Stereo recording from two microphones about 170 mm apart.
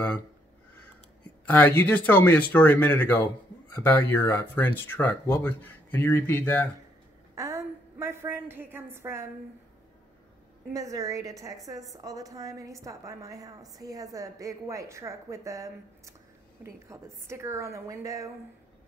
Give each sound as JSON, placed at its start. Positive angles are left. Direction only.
{"t": 1.5, "sound": "speech", "side_deg": 10}
{"t": 7.3, "sound": "a woman's voice", "side_deg": -15}
{"t": 10.7, "sound": "a woman's voice", "side_deg": -20}